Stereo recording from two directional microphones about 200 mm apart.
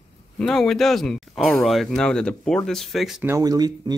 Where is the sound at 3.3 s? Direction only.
20° right (ahead or behind).